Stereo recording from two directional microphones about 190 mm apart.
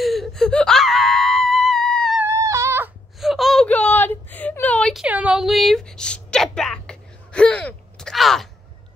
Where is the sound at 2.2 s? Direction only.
15° right (ahead or behind).